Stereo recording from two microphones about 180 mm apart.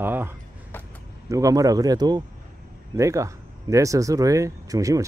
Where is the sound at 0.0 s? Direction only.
10° right (ahead or behind).